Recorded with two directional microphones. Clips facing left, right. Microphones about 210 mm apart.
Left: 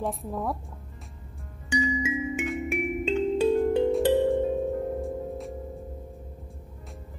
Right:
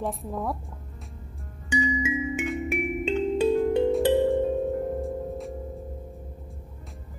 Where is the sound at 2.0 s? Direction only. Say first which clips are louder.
Right 1 dB; centre (ahead or behind).